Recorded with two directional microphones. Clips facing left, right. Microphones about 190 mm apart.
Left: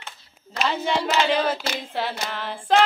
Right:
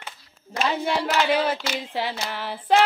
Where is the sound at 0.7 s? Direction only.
10° right (ahead or behind).